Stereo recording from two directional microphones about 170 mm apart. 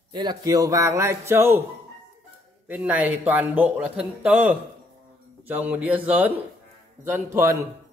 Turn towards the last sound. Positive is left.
turn(degrees=-15)  # may be behind; listen again after turning